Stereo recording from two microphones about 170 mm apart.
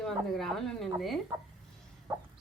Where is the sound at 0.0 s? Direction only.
Centre (ahead or behind).